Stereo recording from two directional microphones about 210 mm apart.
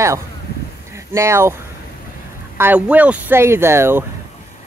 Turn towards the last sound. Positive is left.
turn(degrees=-10)  # may be behind; listen again after turning